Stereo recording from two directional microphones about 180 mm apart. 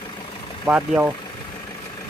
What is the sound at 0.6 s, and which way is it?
Speech, 10° right (ahead or behind).